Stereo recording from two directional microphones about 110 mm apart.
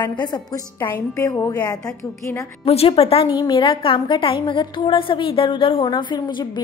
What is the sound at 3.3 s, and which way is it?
A woman's voice, 45° left (ahead or behind).